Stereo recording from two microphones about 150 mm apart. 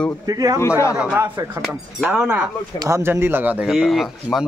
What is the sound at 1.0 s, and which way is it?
A man's voice, 5° right (ahead or behind).